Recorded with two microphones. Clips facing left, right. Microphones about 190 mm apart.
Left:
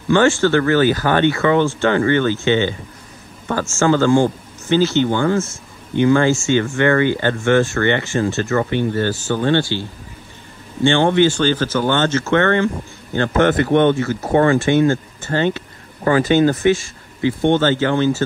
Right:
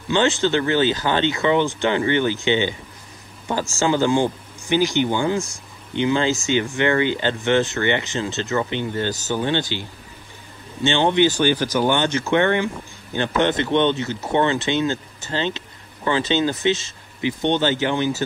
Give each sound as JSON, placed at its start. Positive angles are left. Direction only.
{"t": 0.1, "sound": "speech", "side_deg": -20}
{"t": 14.2, "sound": "speech", "side_deg": 40}
{"t": 14.5, "sound": "speech", "side_deg": -20}